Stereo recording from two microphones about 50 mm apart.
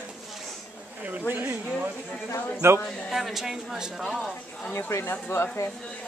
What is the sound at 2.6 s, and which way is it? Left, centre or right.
Speech, right.